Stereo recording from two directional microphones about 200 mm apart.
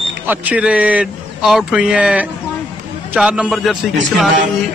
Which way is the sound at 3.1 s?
5° right (ahead or behind).